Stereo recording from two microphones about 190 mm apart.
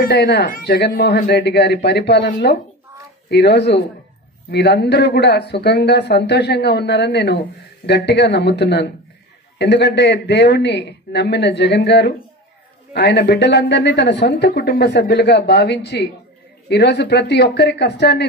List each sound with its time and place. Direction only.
0.0 s speech: 60° left (ahead or behind)